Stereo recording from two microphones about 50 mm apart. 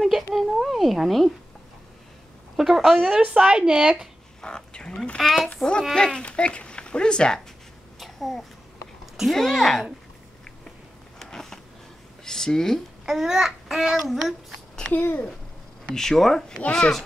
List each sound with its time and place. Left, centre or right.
0.0 s a sound: centre
0.5 s cat: centre
2.5 s speech: centre
3.0 s a child's voice: right
4.4 s duck: centre
5.2 s speech: centre
8.0 s a sound: centre
9.3 s speech: centre
11.1 s a sound: centre
12.3 s speech: centre
13.0 s a child's voice: centre
14.9 s a child's voice: left
15.9 s speech: centre